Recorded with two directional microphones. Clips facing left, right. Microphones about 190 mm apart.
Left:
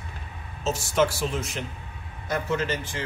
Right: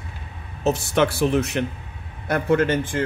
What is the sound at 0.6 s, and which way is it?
Speech, 60° right (ahead or behind).